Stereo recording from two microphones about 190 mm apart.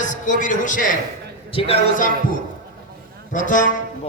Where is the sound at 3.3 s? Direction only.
40° left (ahead or behind).